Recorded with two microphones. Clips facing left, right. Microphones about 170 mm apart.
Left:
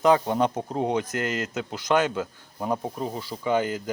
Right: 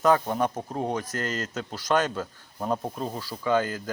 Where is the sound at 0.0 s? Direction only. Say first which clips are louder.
Left 2 dB; 20° left (ahead or behind).